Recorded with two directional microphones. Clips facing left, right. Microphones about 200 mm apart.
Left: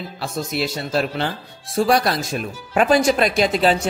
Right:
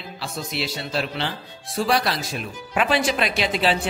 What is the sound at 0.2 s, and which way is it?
Speech, 50° left (ahead or behind).